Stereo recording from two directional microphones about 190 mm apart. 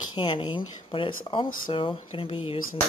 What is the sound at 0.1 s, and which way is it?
Speech, 25° left (ahead or behind).